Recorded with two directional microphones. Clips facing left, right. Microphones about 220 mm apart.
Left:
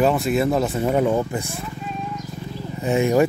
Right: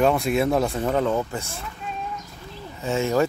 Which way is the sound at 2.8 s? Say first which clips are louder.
Left 4 dB; 15° left (ahead or behind).